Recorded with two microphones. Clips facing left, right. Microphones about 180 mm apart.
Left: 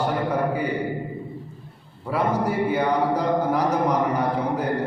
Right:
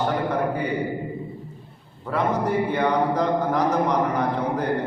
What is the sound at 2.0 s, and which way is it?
A man's voice, 10° left (ahead or behind).